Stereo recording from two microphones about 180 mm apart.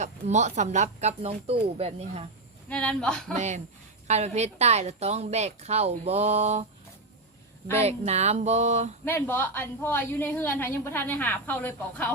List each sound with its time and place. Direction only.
0.0 s a woman's voice: 40° right (ahead or behind)
2.6 s speech: 5° left (ahead or behind)
3.3 s a woman's voice: 40° right (ahead or behind)
7.8 s a woman's voice: 35° right (ahead or behind)
9.0 s a woman's voice: 10° left (ahead or behind)